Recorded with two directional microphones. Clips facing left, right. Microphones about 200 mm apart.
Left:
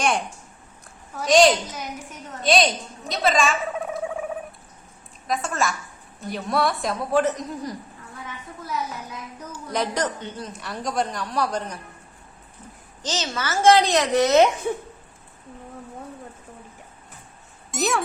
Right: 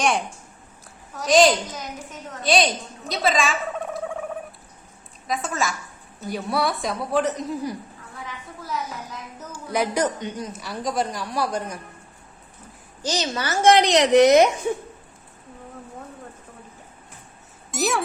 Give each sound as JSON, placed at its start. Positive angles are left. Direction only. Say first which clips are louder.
{"t": 0.0, "sound": "a woman's voice", "louder": "right 1 dB", "side_deg": 0}
{"t": 3.1, "sound": "a sound", "louder": "left 1 dB", "side_deg": 0}
{"t": 5.3, "sound": "a woman's voice", "louder": "left 1 dB", "side_deg": 0}
{"t": 9.5, "sound": "a woman's voice", "louder": "right 2 dB", "side_deg": -10}
{"t": 10.5, "sound": "a woman's voice", "louder": "left 1 dB", "side_deg": 0}
{"t": 13.0, "sound": "a woman's voice", "louder": "right 2 dB", "side_deg": -15}
{"t": 17.7, "sound": "speech", "louder": "even", "side_deg": 0}